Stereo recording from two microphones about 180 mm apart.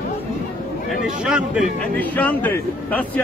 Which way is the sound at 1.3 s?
5° right (ahead or behind).